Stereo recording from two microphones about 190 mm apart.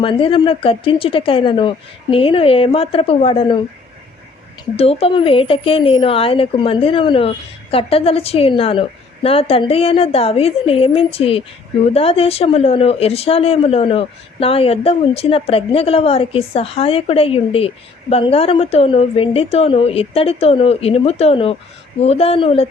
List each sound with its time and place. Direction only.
0.0 s speech: 25° left (ahead or behind)
4.8 s a woman's voice: 30° left (ahead or behind)